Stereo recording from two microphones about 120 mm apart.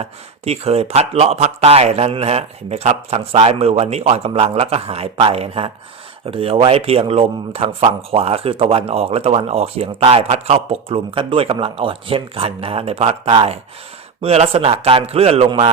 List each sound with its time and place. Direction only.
0.0 s speech: 60° right (ahead or behind)